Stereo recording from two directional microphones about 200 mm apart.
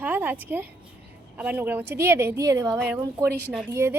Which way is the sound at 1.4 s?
10° right (ahead or behind).